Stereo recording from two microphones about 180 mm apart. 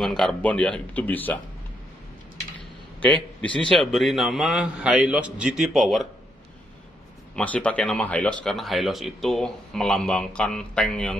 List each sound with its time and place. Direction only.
0.0 s speech: centre (ahead or behind)
3.0 s a man's voice: 10° left (ahead or behind)
7.3 s a man's voice: 5° left (ahead or behind)